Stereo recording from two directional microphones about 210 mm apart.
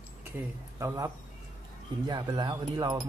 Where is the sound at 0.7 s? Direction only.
15° right (ahead or behind).